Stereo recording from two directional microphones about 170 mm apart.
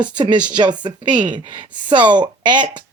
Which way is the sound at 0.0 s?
25° right (ahead or behind).